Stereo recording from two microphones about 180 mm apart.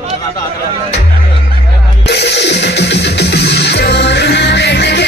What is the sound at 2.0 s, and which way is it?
Music, 70° left (ahead or behind).